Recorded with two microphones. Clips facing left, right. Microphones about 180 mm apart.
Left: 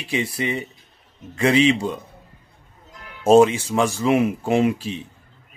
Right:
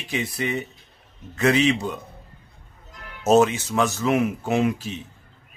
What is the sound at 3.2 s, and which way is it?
Speech, 30° left (ahead or behind).